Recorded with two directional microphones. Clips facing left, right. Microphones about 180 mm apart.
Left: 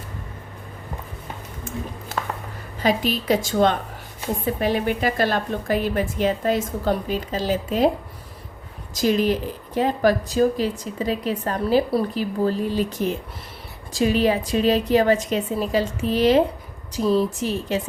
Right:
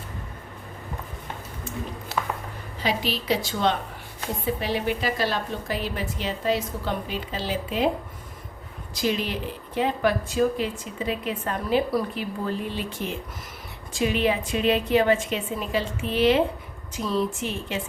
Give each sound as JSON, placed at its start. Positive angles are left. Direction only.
{"t": 2.8, "sound": "a woman's voice", "side_deg": 45}
{"t": 9.0, "sound": "speech", "side_deg": 45}